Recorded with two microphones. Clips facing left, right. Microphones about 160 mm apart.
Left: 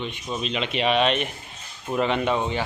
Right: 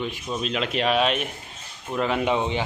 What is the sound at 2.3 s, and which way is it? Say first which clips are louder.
Speech: right 1 dB; 20° right (ahead or behind).